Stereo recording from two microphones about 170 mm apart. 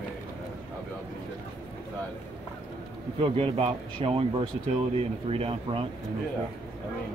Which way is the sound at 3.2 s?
35° right (ahead or behind).